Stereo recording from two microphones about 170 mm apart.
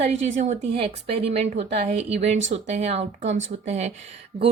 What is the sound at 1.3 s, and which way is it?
Speech, 40° right (ahead or behind).